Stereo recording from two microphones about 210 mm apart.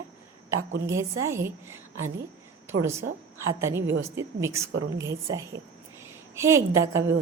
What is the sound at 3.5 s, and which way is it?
A woman's voice, 15° right (ahead or behind).